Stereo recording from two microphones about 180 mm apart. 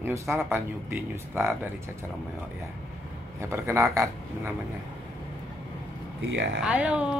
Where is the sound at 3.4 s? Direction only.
15° right (ahead or behind).